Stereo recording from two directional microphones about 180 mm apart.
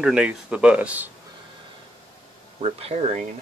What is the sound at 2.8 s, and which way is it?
Speech, 40° right (ahead or behind).